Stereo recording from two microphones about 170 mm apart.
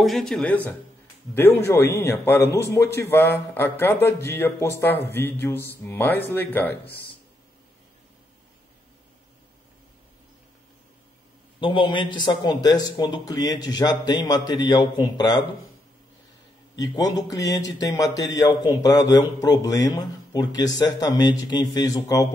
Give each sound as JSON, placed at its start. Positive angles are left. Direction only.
{"t": 0.0, "sound": "speech", "side_deg": 0}
{"t": 11.6, "sound": "speech", "side_deg": 30}
{"t": 16.7, "sound": "speech", "side_deg": 20}